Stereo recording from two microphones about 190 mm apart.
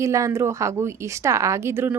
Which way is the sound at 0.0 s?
15° right (ahead or behind).